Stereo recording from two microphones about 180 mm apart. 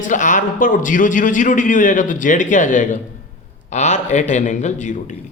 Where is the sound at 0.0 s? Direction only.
45° left (ahead or behind).